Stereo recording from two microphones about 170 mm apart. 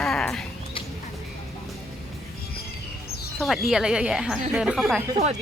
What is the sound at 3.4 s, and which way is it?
A woman's voice, centre (ahead or behind).